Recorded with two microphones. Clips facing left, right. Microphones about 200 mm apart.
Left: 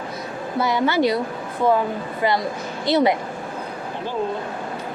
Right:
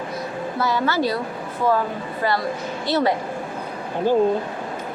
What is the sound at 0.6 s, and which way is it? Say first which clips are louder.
Speech: left 3 dB; 15° left (ahead or behind).